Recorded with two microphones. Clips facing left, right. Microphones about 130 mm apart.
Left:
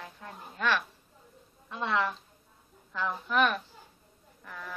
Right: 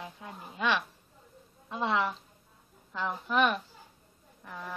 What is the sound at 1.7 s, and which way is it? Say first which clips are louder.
Speech: right 1 dB; 25° right (ahead or behind).